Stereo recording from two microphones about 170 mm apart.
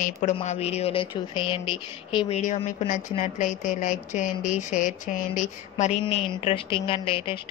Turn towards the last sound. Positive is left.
turn(degrees=30)  # may be behind; listen again after turning